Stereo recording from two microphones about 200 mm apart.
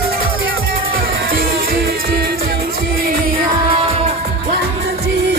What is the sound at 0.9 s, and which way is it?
Music, 45° right (ahead or behind).